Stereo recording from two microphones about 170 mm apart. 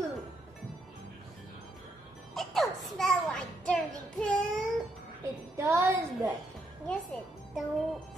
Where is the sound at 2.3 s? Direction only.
Centre (ahead or behind).